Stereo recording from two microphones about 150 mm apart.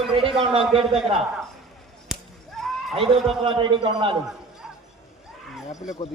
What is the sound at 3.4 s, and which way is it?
Speech, 35° right (ahead or behind).